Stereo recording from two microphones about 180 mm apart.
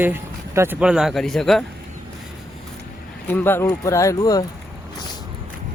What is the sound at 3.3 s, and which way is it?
Speech, 10° left (ahead or behind).